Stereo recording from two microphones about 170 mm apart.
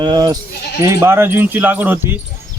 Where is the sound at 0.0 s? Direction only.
25° right (ahead or behind).